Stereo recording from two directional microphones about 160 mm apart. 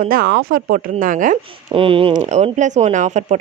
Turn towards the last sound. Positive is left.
turn(degrees=-50)  # may be behind; listen again after turning